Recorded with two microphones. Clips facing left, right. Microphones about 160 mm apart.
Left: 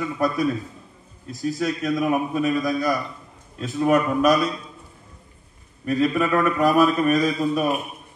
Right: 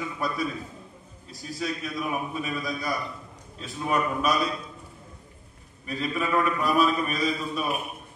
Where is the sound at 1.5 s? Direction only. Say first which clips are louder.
Left 6 dB; 75° left (ahead or behind).